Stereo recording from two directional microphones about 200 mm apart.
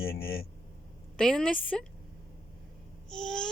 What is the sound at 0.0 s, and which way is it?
Speech, 50° left (ahead or behind).